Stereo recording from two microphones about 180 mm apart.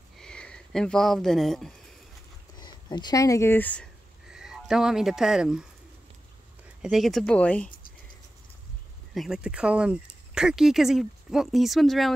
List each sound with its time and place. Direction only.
0.2 s speech: 5° left (ahead or behind)
2.6 s speech: 25° left (ahead or behind); by 3.9 s 10° left (ahead or behind)
4.3 s speech: 5° right (ahead or behind)
6.8 s speech: centre (ahead or behind)
9.1 s speech: centre (ahead or behind)